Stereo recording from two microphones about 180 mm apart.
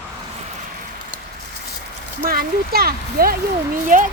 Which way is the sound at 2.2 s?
55° right (ahead or behind).